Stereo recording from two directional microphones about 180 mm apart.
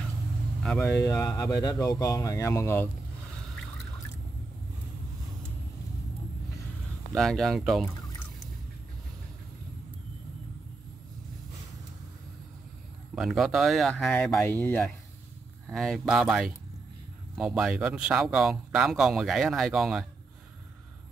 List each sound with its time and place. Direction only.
0.7 s speech: 5° left (ahead or behind)
1.0 s speech: 15° left (ahead or behind)
7.2 s speech: centre (ahead or behind)
13.1 s speech: centre (ahead or behind)